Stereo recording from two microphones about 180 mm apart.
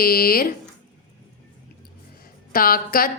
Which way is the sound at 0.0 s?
55° left (ahead or behind).